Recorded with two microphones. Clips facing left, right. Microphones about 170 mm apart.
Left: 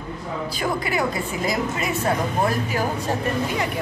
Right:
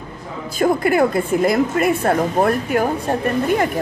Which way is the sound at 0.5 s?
50° right (ahead or behind).